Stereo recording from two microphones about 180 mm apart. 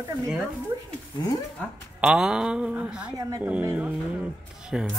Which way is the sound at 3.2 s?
20° right (ahead or behind).